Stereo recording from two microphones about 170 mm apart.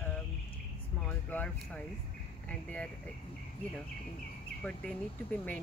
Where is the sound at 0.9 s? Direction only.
10° left (ahead or behind).